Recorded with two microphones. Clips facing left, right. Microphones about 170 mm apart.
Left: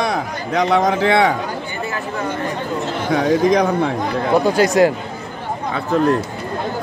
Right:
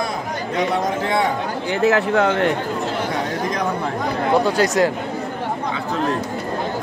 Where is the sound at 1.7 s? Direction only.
90° right; by 2.5 s 70° right (ahead or behind).